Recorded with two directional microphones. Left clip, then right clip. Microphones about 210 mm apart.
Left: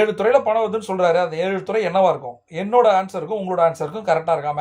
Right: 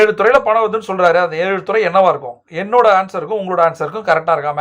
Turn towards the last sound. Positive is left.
turn(degrees=-15)  # may be behind; listen again after turning